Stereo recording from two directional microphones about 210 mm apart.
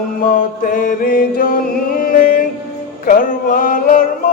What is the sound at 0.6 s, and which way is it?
Music, 40° left (ahead or behind).